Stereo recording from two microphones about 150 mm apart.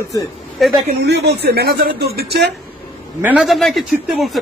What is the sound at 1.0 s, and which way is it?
Speech, 90° right.